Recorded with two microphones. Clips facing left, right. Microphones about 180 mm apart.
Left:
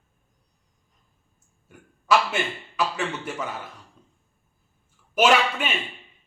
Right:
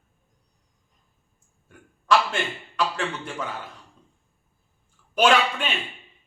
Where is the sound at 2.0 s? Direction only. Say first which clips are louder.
Even; 5° left (ahead or behind).